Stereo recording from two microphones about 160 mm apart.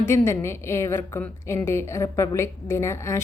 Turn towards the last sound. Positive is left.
turn(degrees=15)  # may be behind; listen again after turning